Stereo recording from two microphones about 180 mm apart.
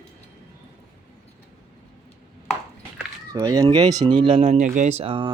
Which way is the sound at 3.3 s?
20° right (ahead or behind).